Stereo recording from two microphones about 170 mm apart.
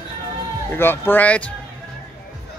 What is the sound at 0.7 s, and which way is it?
Speech, 10° left (ahead or behind).